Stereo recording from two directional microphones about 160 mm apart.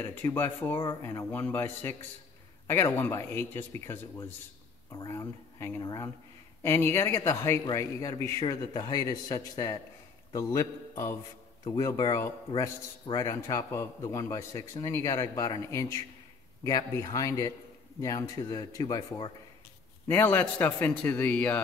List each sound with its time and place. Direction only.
0.0 s a man's voice: 15° left (ahead or behind)
20.1 s speech: 15° left (ahead or behind)